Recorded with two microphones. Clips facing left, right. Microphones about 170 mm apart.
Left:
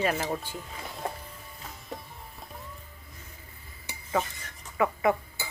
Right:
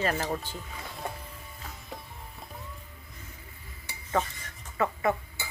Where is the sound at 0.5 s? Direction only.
Centre (ahead or behind).